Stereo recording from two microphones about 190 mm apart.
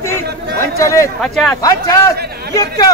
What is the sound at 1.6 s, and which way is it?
A man's voice, 20° left (ahead or behind).